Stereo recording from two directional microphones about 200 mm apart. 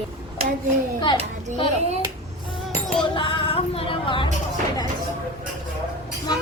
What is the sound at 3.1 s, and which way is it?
Music, 25° left (ahead or behind).